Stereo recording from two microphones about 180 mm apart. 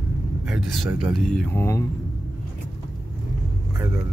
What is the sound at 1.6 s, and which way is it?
Speech, 15° left (ahead or behind).